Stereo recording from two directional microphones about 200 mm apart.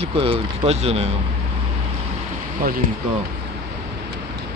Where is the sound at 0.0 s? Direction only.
30° right (ahead or behind).